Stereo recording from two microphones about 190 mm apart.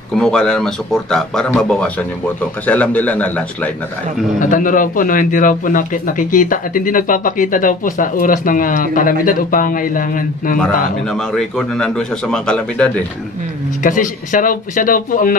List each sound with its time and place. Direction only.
0.1 s a man's voice: 5° left (ahead or behind)
4.4 s a man's voice: 45° left (ahead or behind)
11.1 s speech: 5° left (ahead or behind)
13.8 s a man's voice: 45° left (ahead or behind)